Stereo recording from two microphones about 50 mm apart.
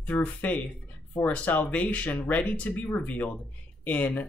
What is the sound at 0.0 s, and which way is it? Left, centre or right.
Speech, left.